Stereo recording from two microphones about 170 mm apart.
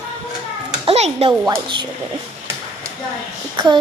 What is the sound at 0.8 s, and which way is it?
Children playing, 35° right (ahead or behind).